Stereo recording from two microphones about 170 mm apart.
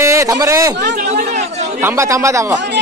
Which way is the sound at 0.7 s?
70° right (ahead or behind).